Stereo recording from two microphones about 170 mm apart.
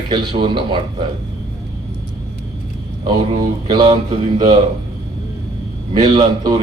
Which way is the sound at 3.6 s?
25° right (ahead or behind).